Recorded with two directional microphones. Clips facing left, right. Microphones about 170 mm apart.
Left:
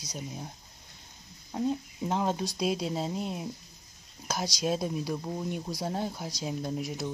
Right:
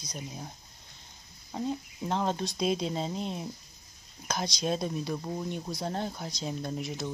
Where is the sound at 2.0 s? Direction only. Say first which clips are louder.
Left 1 dB; 5° left (ahead or behind).